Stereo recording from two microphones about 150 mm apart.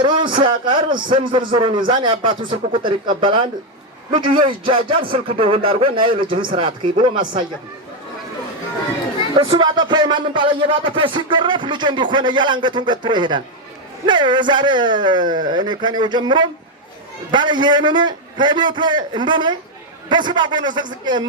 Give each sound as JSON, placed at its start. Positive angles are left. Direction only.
{"t": 0.0, "sound": "speech", "side_deg": -30}
{"t": 0.9, "sound": "a man's voice", "side_deg": -65}
{"t": 1.1, "sound": "speech", "side_deg": -35}
{"t": 9.4, "sound": "speech", "side_deg": -30}